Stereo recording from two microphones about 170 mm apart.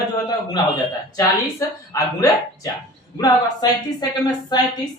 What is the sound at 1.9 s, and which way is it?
A man's voice, 20° left (ahead or behind).